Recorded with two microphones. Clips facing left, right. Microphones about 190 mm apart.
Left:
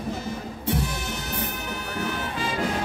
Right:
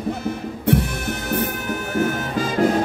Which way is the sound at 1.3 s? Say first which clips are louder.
Right 11 dB; 50° right (ahead or behind).